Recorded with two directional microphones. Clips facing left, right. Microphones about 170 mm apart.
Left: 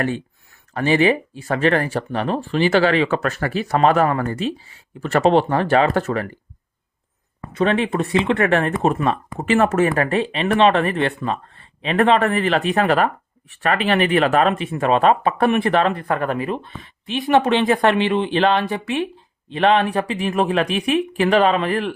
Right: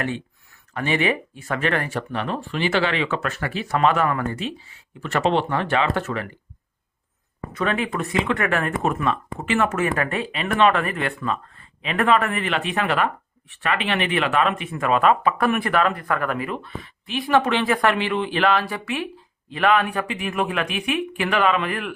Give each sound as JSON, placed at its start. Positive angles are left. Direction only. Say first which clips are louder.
{"t": 0.7, "sound": "speech", "louder": "left 6 dB", "side_deg": 35}
{"t": 7.5, "sound": "speech", "louder": "left 5 dB", "side_deg": 30}